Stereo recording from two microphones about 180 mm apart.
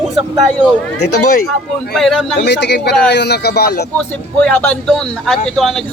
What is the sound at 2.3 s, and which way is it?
Speech, 70° left (ahead or behind).